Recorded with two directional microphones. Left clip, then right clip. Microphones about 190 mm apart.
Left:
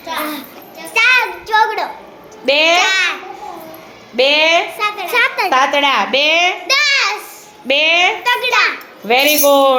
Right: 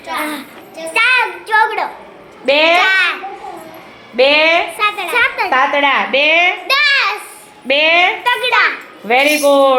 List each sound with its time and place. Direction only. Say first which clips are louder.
0.9 s child singing: left 1 dB; 5° right (ahead or behind)
2.5 s a child's voice: right 1 dB; centre (ahead or behind)
2.7 s babbling: right 2 dB; 10° left (ahead or behind)
4.2 s a child's voice: right 1 dB; centre (ahead or behind)
4.8 s a child's voice: right 3 dB; 15° right (ahead or behind)
5.1 s a woman's voice: left 2 dB; 20° left (ahead or behind)
5.5 s a child's voice: even; 5° left (ahead or behind)
7.7 s a child's voice: right 1 dB; centre (ahead or behind)